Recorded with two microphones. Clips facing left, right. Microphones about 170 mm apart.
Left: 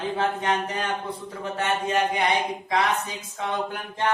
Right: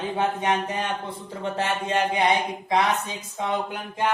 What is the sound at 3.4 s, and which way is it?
Speech, 15° right (ahead or behind).